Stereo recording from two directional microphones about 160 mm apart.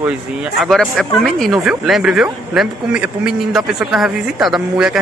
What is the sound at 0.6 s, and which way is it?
Speech, centre (ahead or behind).